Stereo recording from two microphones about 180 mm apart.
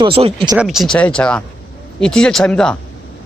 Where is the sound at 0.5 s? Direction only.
5° right (ahead or behind).